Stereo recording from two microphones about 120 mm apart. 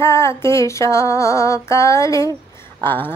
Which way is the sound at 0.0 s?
25° left (ahead or behind).